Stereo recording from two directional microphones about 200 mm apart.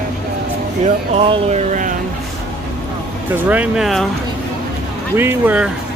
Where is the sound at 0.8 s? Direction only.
30° right (ahead or behind).